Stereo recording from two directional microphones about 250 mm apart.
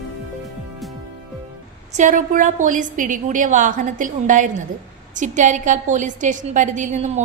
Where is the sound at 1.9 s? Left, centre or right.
Right.